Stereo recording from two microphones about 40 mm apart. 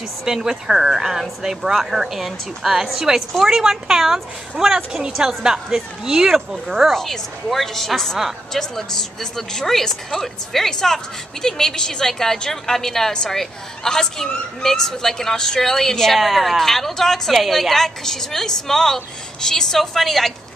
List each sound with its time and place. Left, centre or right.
0.2 s speech: centre
6.9 s a woman's voice: centre